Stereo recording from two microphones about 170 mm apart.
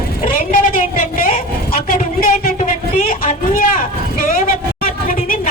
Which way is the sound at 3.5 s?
55° left (ahead or behind).